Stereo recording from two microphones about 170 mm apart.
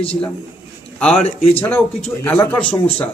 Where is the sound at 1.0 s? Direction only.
5° left (ahead or behind).